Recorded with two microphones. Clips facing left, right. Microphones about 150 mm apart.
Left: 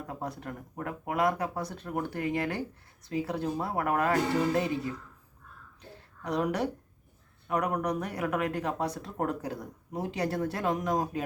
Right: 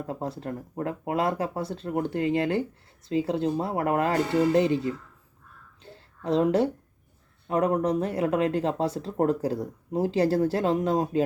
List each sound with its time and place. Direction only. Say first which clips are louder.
0.0 s speech: right 5 dB; 25° right (ahead or behind)
5.9 s a sound: right 7 dB; 25° right (ahead or behind)
7.4 s speech: right 5 dB; 25° right (ahead or behind)